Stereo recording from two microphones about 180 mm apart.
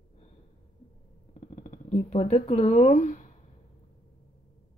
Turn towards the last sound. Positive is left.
turn(degrees=40)  # may be behind; listen again after turning